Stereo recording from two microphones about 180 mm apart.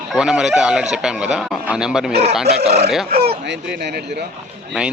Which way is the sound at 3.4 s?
75° right (ahead or behind).